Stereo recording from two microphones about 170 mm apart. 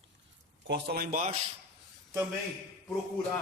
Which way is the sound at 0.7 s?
70° right (ahead or behind).